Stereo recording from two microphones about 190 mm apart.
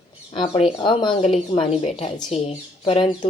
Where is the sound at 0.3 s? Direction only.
30° left (ahead or behind).